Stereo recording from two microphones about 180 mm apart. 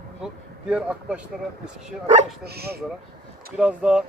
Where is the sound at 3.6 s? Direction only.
5° right (ahead or behind).